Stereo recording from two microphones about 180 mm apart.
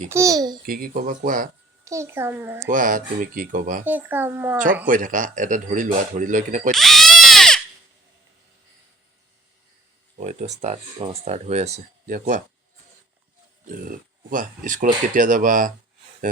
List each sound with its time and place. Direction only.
0.1 s a child's voice: 20° right (ahead or behind)
0.6 s speech: 55° right (ahead or behind)
1.8 s a child's voice: 15° right (ahead or behind)
2.6 s speech: 45° right (ahead or behind)
3.8 s a child's voice: 10° right (ahead or behind)
4.9 s speech: 45° right (ahead or behind)
6.7 s a sound: centre (ahead or behind)
10.2 s speech: 40° right (ahead or behind)
13.7 s speech: 50° right (ahead or behind)